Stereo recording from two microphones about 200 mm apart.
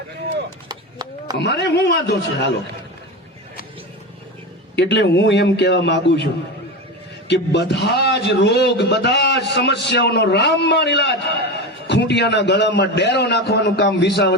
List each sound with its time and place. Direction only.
0.7 s a sound: 20° right (ahead or behind)
1.4 s a man's voice: 60° left (ahead or behind)
4.7 s a man's voice: 60° left (ahead or behind)
7.3 s a man's voice: 60° left (ahead or behind)